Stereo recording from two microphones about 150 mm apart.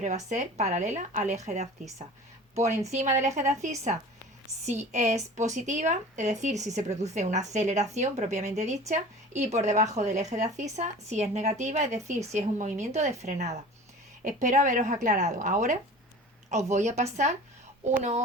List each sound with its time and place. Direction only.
0.3 s speech: 50° right (ahead or behind)